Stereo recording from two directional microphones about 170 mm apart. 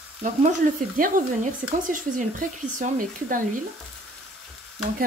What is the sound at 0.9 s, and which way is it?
Speech, 55° right (ahead or behind).